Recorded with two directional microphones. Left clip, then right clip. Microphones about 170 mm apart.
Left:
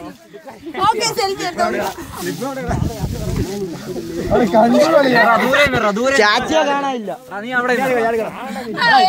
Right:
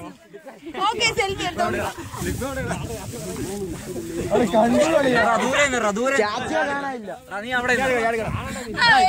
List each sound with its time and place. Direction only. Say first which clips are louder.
0.7 s a woman's voice: left 5 dB; 5° right (ahead or behind)
1.7 s speech: left 5 dB; 55° right (ahead or behind)
4.3 s a woman's voice: left 6 dB; 15° right (ahead or behind)
4.9 s a man's voice: left 6 dB; 5° right (ahead or behind)
6.7 s a man's voice: left 8 dB; 25° left (ahead or behind)
7.3 s a woman's voice: left 4 dB; 30° right (ahead or behind)